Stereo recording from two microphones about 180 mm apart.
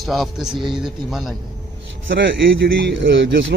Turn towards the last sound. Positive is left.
turn(degrees=-80)